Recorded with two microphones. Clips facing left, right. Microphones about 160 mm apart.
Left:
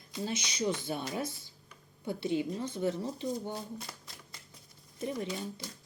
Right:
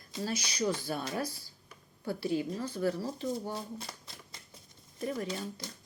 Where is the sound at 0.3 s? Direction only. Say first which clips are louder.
Right 1 dB; 20° left (ahead or behind).